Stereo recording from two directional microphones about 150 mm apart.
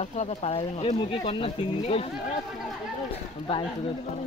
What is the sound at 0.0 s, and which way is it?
Speech, 50° left (ahead or behind).